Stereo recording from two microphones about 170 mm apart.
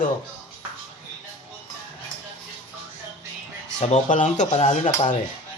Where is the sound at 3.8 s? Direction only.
45° left (ahead or behind).